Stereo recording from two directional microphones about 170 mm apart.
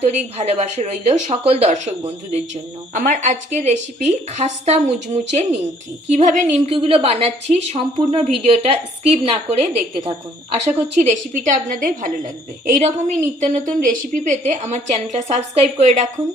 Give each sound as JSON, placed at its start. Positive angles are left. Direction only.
{"t": 0.1, "sound": "a woman's voice", "side_deg": -40}
{"t": 2.9, "sound": "a woman's voice", "side_deg": -55}
{"t": 6.7, "sound": "a woman's voice", "side_deg": -35}